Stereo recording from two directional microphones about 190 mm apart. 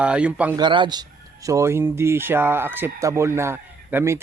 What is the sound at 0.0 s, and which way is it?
Speech, 5° right (ahead or behind).